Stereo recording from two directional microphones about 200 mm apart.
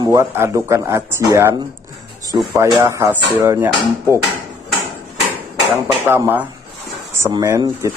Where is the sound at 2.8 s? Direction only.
15° right (ahead or behind).